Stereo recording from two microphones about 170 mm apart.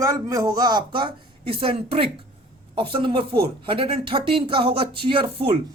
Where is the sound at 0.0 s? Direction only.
20° right (ahead or behind).